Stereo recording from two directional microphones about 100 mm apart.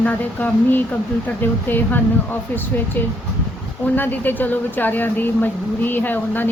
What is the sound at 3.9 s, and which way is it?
Speech, 20° left (ahead or behind).